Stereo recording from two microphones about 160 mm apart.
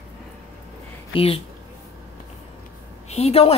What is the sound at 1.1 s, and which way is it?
Speech, 35° left (ahead or behind).